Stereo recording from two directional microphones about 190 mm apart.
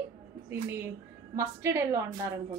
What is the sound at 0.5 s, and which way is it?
A woman's voice, 15° right (ahead or behind).